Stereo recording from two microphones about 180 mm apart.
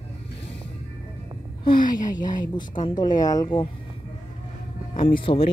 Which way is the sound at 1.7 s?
50° left (ahead or behind).